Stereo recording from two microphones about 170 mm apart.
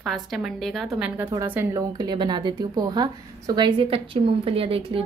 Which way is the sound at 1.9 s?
25° right (ahead or behind).